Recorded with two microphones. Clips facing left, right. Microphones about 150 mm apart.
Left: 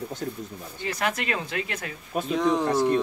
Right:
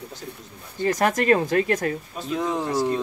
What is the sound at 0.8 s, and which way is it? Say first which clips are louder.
Speech: right 9 dB; 45° right (ahead or behind).